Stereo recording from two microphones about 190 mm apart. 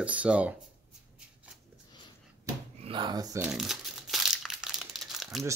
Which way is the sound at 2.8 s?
25° right (ahead or behind).